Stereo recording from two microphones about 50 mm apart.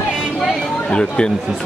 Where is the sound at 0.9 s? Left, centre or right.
Centre.